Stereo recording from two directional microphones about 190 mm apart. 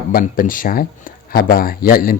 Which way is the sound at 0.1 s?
50° left (ahead or behind).